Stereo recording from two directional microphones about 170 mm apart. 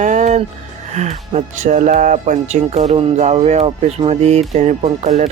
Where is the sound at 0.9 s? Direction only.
45° right (ahead or behind).